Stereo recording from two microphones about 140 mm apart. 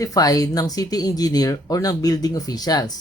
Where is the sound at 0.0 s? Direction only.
25° left (ahead or behind).